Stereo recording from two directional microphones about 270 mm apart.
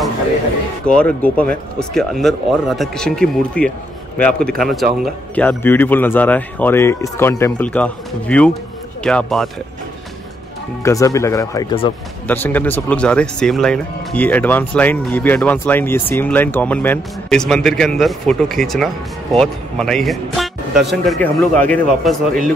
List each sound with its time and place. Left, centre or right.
0.8 s speech: centre
10.8 s speech: centre
12.3 s speech: centre